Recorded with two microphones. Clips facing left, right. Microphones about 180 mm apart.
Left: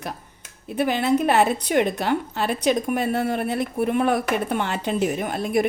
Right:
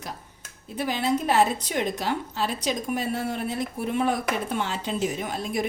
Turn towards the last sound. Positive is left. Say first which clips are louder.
# left 6 dB
turn(degrees=60)  # may be behind; listen again after turning